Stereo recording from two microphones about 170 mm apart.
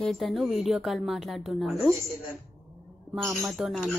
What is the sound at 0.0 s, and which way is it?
Speech, centre (ahead or behind).